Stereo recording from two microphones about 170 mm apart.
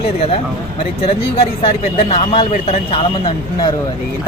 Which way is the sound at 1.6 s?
35° left (ahead or behind).